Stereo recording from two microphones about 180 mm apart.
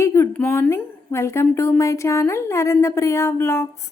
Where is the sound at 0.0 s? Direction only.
15° left (ahead or behind).